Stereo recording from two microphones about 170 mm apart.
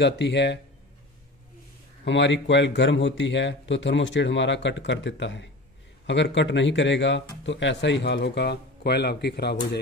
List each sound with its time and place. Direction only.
0.0 s speech: 90° left
2.0 s speech: 90° left; by 9.8 s 75° left (ahead or behind)